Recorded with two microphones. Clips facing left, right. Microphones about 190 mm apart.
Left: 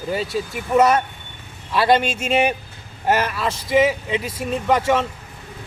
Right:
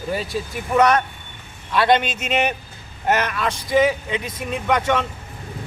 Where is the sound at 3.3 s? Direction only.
5° left (ahead or behind).